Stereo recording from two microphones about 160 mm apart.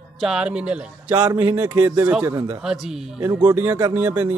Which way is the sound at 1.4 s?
15° right (ahead or behind).